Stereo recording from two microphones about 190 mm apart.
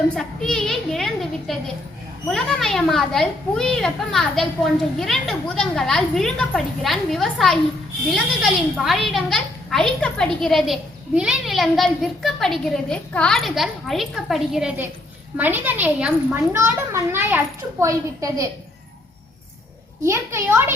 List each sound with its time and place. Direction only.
0.2 s a woman's voice: centre (ahead or behind); by 18.4 s 20° right (ahead or behind)
20.1 s a child's voice: 15° right (ahead or behind)